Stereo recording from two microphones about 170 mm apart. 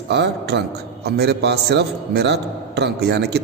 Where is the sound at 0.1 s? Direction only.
85° right.